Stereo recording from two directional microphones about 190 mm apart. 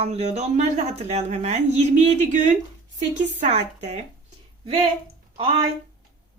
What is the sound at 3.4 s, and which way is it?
Speech, 35° right (ahead or behind).